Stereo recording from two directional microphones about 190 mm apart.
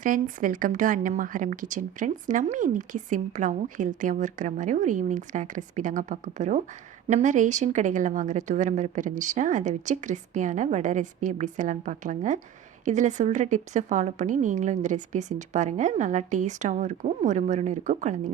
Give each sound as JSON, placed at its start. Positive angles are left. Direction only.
{"t": 0.0, "sound": "a woman's voice", "side_deg": -45}